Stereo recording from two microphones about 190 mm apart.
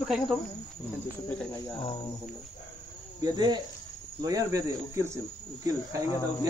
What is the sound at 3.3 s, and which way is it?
Cricket, 20° right (ahead or behind).